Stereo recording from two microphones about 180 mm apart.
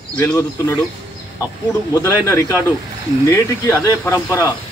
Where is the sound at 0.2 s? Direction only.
15° left (ahead or behind).